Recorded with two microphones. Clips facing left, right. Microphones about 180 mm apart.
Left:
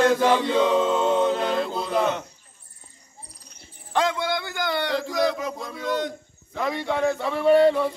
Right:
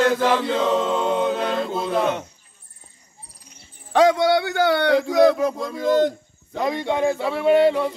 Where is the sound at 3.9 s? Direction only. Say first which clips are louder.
Right 8 dB; 65° right (ahead or behind).